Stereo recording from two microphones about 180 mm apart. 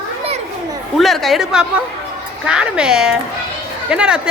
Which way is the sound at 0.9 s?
Centre (ahead or behind).